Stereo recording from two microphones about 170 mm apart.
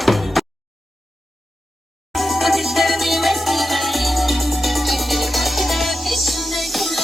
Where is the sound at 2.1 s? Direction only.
Centre (ahead or behind).